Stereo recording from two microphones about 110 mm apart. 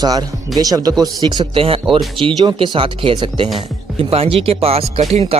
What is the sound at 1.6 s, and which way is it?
Speech, 55° right (ahead or behind).